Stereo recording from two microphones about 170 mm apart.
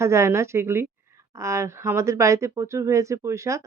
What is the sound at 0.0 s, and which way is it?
A woman's voice, 15° right (ahead or behind).